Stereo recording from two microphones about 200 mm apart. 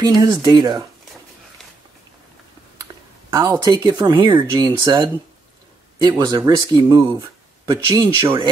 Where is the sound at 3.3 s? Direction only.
20° right (ahead or behind).